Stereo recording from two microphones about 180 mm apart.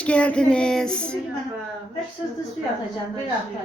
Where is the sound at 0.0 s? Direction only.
5° left (ahead or behind).